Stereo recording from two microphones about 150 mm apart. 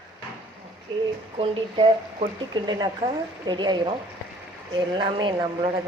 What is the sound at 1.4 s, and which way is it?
Speech, 35° right (ahead or behind).